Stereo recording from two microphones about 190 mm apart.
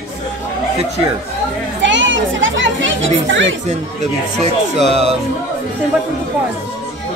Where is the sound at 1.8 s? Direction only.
75° right (ahead or behind).